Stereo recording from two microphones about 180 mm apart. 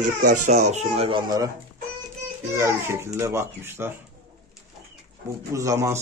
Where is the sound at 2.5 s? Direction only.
15° right (ahead or behind).